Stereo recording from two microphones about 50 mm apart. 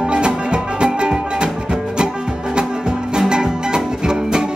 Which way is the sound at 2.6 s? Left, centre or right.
Centre.